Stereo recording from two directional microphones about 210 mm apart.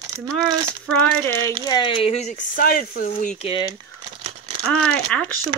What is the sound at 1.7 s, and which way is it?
Speech, 20° left (ahead or behind).